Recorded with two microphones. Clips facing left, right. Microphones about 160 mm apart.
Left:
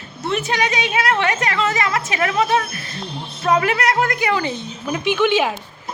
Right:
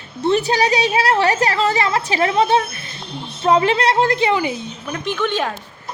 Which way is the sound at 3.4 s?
25° right (ahead or behind).